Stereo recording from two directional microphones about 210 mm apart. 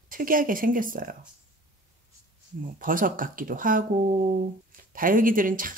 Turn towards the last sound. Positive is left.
turn(degrees=-40)  # may be behind; listen again after turning